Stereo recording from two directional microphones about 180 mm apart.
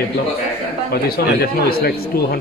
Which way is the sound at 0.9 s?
60° left (ahead or behind).